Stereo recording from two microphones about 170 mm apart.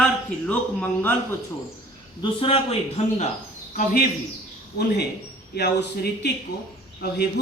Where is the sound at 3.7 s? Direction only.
55° left (ahead or behind).